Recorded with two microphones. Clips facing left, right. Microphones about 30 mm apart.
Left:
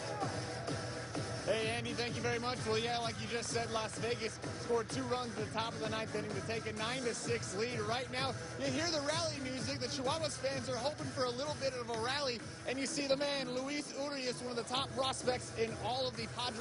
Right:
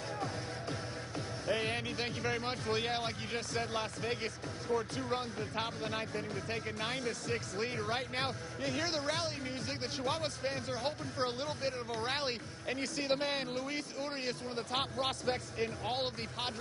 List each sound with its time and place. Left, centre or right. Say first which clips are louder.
1.5 s music: right 1 dB; right
2.6 s speech: right 2 dB; right